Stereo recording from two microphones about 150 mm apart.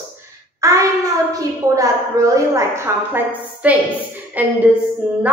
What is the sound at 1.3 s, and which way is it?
A woman's voice, 20° right (ahead or behind).